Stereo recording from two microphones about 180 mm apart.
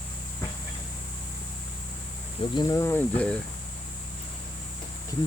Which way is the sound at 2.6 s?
15° left (ahead or behind).